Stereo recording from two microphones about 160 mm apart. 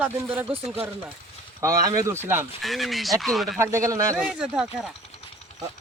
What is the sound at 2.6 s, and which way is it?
Speech, centre (ahead or behind).